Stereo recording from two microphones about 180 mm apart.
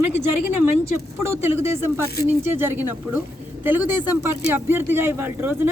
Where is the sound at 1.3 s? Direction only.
15° right (ahead or behind).